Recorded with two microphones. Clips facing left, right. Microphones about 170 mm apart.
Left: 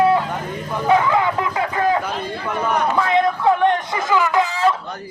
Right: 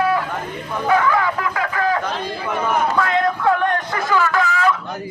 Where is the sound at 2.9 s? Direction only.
20° left (ahead or behind).